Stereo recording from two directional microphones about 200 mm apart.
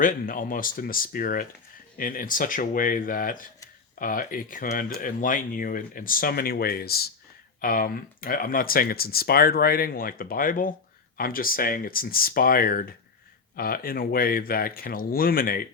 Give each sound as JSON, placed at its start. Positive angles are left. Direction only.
{"t": 0.0, "sound": "speech", "side_deg": 40}